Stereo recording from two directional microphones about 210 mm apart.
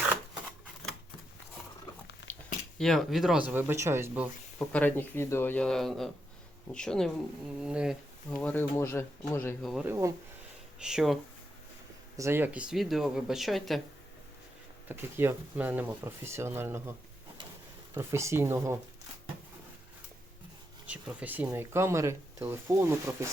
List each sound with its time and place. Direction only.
2.7 s speech: centre (ahead or behind)
4.7 s speech: 10° left (ahead or behind)
8.3 s speech: 5° left (ahead or behind)
9.8 s speech: 15° right (ahead or behind)
12.1 s speech: 10° right (ahead or behind)
14.8 s speech: 10° right (ahead or behind)
17.9 s speech: 15° right (ahead or behind)
20.8 s speech: 5° right (ahead or behind)